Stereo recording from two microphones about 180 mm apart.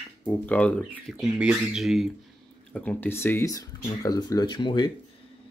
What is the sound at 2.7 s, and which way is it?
Speech, 10° left (ahead or behind).